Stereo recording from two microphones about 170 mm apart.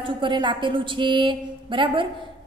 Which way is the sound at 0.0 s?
30° right (ahead or behind).